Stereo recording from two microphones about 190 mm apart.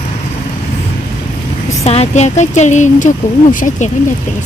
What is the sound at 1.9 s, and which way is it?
Speech, 35° left (ahead or behind).